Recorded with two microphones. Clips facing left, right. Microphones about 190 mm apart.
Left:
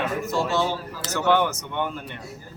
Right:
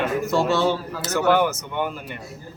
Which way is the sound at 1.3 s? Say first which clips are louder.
Left 1 dB; 5° right (ahead or behind).